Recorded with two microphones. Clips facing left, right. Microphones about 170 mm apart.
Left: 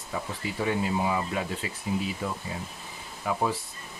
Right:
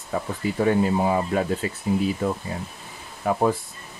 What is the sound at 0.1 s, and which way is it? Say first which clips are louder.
Speech: right 7 dB; 50° right (ahead or behind).